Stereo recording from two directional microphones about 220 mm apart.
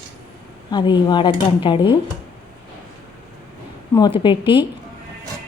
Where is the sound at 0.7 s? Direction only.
20° left (ahead or behind).